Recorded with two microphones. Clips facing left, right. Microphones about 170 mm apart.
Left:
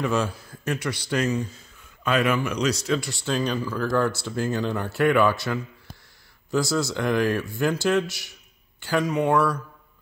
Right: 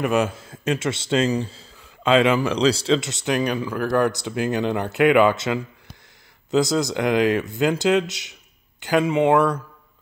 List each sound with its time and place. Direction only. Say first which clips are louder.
0.0 s a man's voice: right 4 dB; 15° right (ahead or behind)
6.5 s a man's voice: right 4 dB; 20° right (ahead or behind)